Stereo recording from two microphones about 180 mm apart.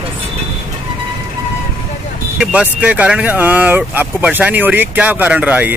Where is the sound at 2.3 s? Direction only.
5° right (ahead or behind).